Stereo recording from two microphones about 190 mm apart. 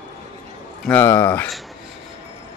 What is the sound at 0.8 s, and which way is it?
Speech, 10° left (ahead or behind).